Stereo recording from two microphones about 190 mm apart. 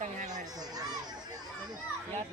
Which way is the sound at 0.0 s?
40° right (ahead or behind).